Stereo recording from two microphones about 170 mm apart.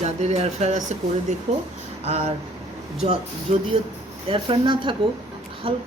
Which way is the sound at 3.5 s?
40° right (ahead or behind).